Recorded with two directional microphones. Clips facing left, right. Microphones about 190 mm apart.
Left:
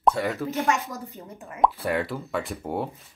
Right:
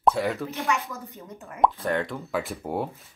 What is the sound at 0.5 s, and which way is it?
Speech, 45° left (ahead or behind).